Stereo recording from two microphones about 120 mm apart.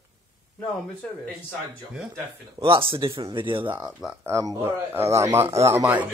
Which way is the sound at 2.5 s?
45° right (ahead or behind).